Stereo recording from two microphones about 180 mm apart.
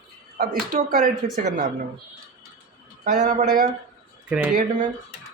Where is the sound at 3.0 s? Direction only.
50° right (ahead or behind).